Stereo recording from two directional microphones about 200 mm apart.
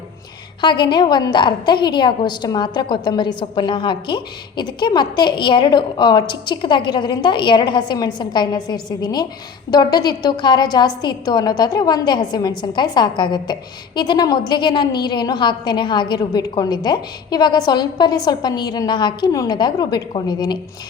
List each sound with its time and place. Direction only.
0.6 s a woman's voice: 25° left (ahead or behind)